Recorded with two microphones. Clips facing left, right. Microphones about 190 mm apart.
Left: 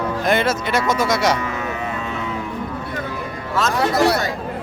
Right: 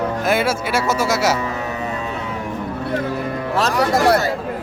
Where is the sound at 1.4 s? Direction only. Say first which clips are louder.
Right 1 dB; 35° right (ahead or behind).